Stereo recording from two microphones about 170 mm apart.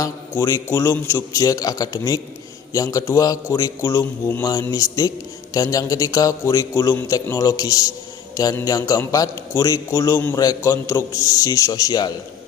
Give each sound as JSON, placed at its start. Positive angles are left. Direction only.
{"t": 0.0, "sound": "a man's voice", "side_deg": 20}